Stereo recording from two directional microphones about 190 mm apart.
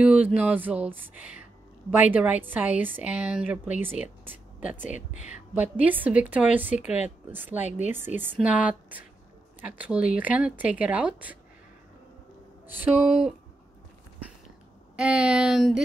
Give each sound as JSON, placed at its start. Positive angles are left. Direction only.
{"t": 0.0, "sound": "a woman's voice", "side_deg": -5}
{"t": 4.9, "sound": "speech", "side_deg": 40}
{"t": 5.5, "sound": "a woman's voice", "side_deg": -10}
{"t": 12.6, "sound": "a woman's voice", "side_deg": -10}
{"t": 15.0, "sound": "speech", "side_deg": -5}